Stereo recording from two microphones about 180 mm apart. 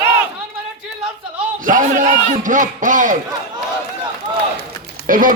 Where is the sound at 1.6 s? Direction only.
45° right (ahead or behind).